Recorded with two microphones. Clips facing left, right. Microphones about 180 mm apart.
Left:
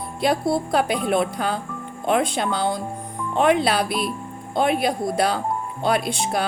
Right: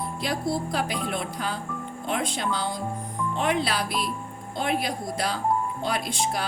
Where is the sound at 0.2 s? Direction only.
60° left (ahead or behind).